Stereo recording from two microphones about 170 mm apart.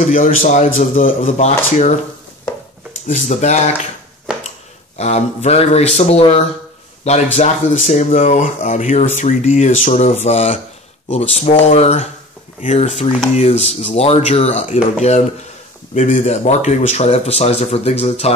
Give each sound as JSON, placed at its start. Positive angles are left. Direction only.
{"t": 0.0, "sound": "speech", "side_deg": 50}
{"t": 3.1, "sound": "speech", "side_deg": 45}
{"t": 4.9, "sound": "speech", "side_deg": 40}